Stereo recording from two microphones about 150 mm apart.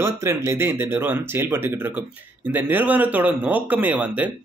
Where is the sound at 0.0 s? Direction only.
20° right (ahead or behind).